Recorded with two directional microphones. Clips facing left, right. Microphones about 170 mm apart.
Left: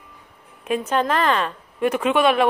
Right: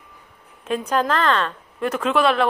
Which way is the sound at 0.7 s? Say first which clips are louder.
Even; 5° left (ahead or behind).